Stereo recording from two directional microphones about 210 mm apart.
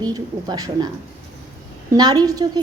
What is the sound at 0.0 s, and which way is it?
Speech, 20° right (ahead or behind).